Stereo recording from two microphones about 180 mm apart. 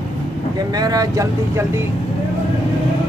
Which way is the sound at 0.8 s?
20° right (ahead or behind).